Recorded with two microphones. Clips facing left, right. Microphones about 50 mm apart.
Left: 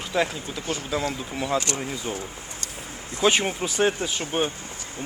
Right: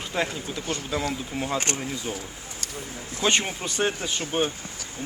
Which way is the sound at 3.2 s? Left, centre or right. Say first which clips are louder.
Left 3 dB; centre.